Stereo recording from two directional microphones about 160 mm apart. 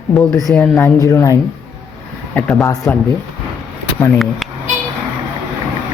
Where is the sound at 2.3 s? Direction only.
5° left (ahead or behind).